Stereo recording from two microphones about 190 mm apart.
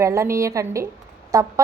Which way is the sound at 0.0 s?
15° right (ahead or behind).